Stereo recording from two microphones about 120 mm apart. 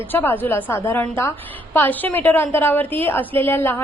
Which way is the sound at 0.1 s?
15° left (ahead or behind).